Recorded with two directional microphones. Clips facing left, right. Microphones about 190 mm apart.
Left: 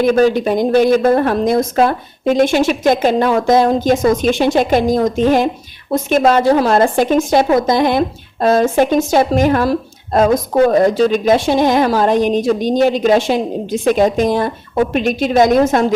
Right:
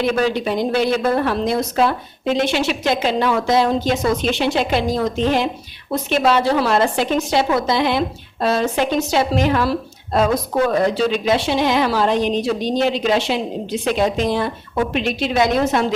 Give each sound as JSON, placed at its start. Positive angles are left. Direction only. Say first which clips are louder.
{"t": 0.0, "sound": "speech", "louder": "left 6 dB", "side_deg": 45}